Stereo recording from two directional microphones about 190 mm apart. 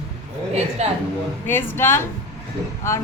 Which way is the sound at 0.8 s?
35° right (ahead or behind).